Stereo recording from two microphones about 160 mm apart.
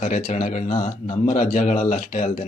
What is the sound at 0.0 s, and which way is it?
Speech, 50° left (ahead or behind).